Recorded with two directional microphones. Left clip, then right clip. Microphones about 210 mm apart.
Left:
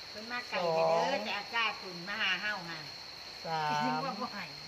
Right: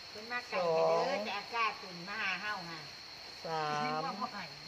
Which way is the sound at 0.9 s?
15° right (ahead or behind).